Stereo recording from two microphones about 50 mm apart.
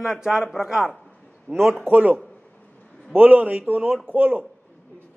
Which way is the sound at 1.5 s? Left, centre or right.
Centre.